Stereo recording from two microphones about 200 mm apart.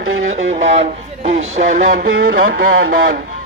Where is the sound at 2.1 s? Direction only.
85° right.